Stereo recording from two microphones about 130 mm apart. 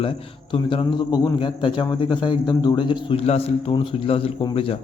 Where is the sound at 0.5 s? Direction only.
40° left (ahead or behind).